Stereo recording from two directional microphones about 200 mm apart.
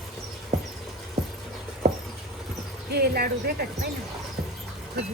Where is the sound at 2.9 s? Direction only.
55° right (ahead or behind).